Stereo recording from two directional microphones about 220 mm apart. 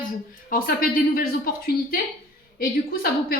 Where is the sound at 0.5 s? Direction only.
40° left (ahead or behind).